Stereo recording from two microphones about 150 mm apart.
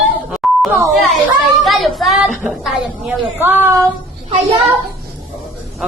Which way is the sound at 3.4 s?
15° right (ahead or behind).